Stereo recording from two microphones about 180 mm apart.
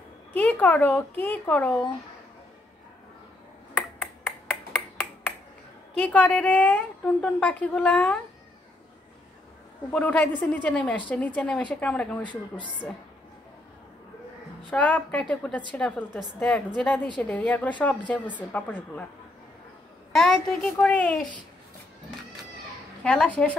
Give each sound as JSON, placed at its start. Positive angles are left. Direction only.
{"t": 0.3, "sound": "a woman's voice", "side_deg": 10}
{"t": 5.9, "sound": "a woman's voice", "side_deg": 10}
{"t": 9.8, "sound": "a woman's voice", "side_deg": 10}
{"t": 12.2, "sound": "speech", "side_deg": 25}
{"t": 14.7, "sound": "a woman's voice", "side_deg": 5}
{"t": 20.1, "sound": "a child's voice", "side_deg": 0}
{"t": 23.0, "sound": "a woman's voice", "side_deg": 5}